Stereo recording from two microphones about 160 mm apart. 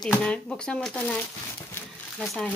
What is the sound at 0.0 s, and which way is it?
Speech, 5° left (ahead or behind).